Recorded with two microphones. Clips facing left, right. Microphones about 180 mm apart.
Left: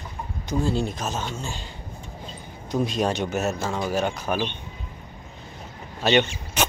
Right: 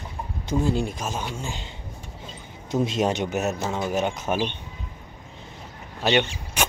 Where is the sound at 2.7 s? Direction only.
25° right (ahead or behind).